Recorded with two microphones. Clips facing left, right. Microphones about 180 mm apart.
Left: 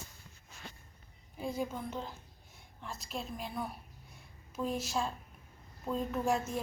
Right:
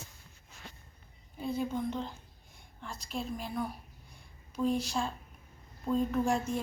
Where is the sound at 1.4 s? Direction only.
10° left (ahead or behind).